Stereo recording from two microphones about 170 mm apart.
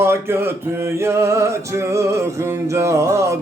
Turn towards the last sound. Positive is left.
turn(degrees=-15)  # may be behind; listen again after turning